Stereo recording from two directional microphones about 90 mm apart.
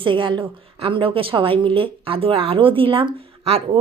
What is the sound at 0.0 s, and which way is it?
A woman's voice, 65° right (ahead or behind).